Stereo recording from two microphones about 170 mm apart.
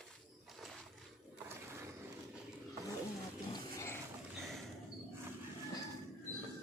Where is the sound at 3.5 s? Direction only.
15° left (ahead or behind).